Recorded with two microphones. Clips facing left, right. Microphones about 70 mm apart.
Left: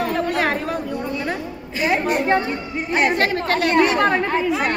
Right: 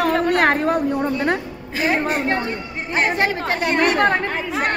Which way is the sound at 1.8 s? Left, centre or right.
Right.